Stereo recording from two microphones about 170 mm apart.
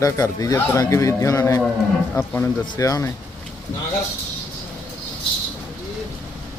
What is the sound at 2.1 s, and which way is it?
Speech, 5° left (ahead or behind).